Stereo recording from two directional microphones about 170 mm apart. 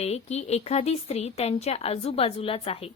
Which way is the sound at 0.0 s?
40° left (ahead or behind).